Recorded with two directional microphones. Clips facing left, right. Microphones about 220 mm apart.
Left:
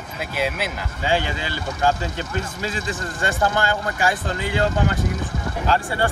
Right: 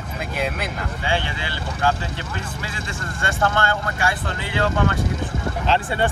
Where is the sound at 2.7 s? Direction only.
15° left (ahead or behind).